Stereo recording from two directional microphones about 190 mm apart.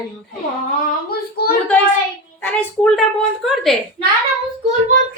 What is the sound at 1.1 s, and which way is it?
Speech, 55° left (ahead or behind).